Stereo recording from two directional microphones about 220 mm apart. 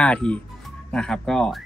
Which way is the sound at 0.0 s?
5° left (ahead or behind).